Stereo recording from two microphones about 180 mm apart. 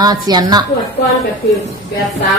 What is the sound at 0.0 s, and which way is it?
Speech, 20° right (ahead or behind).